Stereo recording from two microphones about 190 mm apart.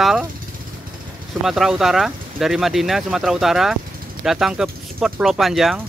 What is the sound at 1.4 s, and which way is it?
Speech, centre (ahead or behind).